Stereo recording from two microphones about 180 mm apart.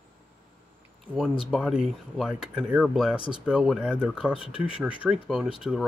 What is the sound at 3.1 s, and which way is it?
Speech, 30° left (ahead or behind).